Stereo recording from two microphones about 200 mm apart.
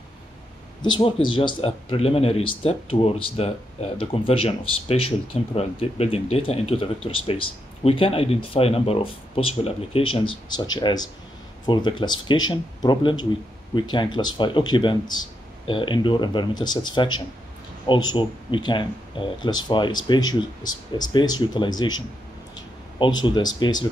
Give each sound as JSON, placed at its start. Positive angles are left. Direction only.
{"t": 0.8, "sound": "speech", "side_deg": 25}
{"t": 23.2, "sound": "speech", "side_deg": 20}